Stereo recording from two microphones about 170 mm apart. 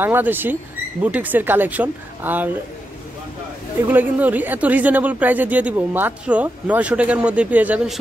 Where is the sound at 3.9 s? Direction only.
10° right (ahead or behind).